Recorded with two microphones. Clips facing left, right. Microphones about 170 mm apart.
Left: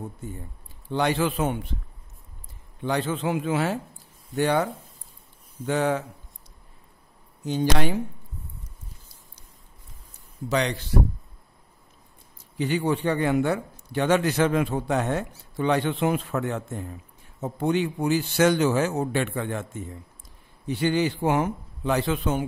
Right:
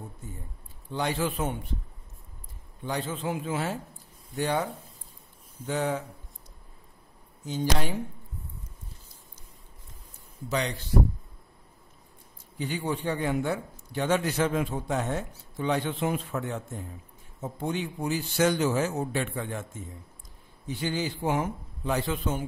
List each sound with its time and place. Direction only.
0.8 s a man's voice: 75° left (ahead or behind)
2.8 s a man's voice: 75° left (ahead or behind)
5.7 s a man's voice: 75° left (ahead or behind)
7.4 s a man's voice: 70° left (ahead or behind)
10.5 s a man's voice: 80° left
12.5 s a man's voice: 75° left (ahead or behind)